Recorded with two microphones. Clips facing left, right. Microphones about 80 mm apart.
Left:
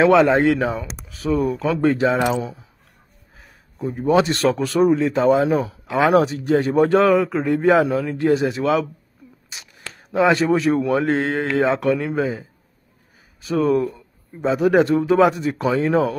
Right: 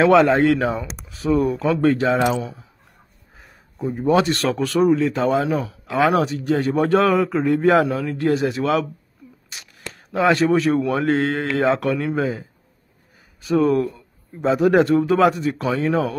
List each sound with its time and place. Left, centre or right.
0.0 s speech: centre
1.8 s speech: centre
2.2 s speech: left
3.4 s a man's voice: centre; by 5.2 s left
5.2 s speech: centre
5.5 s speech: left
5.9 s speech: centre
10.1 s speech: centre